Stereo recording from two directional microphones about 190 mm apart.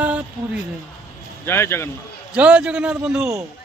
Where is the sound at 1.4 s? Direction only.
10° left (ahead or behind).